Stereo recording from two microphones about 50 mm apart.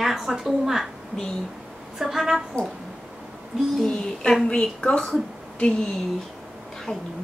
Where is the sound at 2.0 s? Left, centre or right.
Centre.